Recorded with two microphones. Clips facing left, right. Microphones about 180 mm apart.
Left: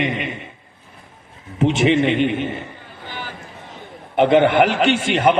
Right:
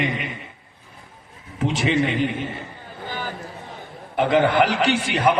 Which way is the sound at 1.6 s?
20° left (ahead or behind).